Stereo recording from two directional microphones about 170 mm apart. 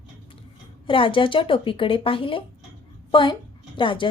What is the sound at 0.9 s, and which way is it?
A woman's voice, 30° left (ahead or behind).